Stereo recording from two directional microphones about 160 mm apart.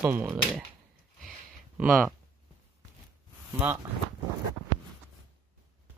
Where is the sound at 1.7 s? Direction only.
5° right (ahead or behind).